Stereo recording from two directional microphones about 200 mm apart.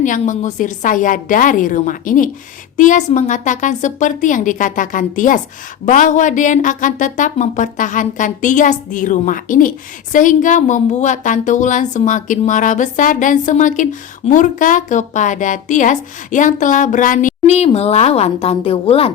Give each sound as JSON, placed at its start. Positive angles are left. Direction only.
{"t": 0.0, "sound": "speech", "side_deg": 40}